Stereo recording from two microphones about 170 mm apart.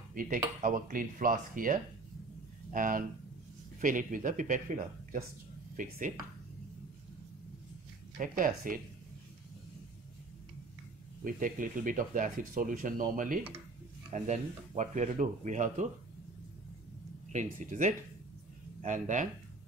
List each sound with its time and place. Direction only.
0.1 s speech: 50° right (ahead or behind)
8.2 s speech: 50° right (ahead or behind)
11.2 s speech: 50° right (ahead or behind)
17.3 s speech: 45° right (ahead or behind)